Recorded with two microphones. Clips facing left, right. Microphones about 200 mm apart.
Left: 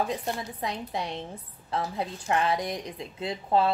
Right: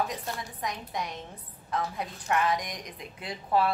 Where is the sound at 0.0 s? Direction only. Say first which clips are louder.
Left 3 dB; 30° left (ahead or behind).